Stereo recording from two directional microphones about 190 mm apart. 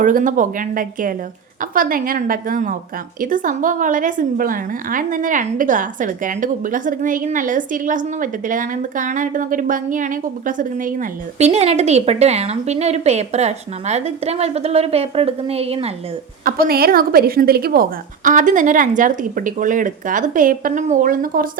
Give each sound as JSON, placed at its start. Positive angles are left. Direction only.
{"t": 0.0, "sound": "a woman's voice", "side_deg": -45}
{"t": 16.4, "sound": "a woman's voice", "side_deg": -50}